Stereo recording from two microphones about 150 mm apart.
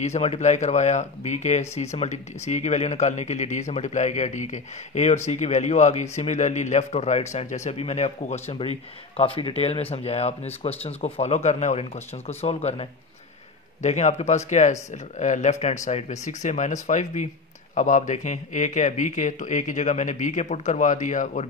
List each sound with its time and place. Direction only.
0.0 s speech: 45° left (ahead or behind)
13.8 s speech: 50° left (ahead or behind)